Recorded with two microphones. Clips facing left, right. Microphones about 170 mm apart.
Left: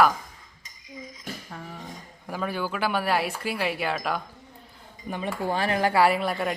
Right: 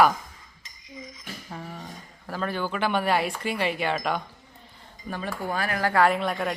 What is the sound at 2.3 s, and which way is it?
Speech, 10° left (ahead or behind).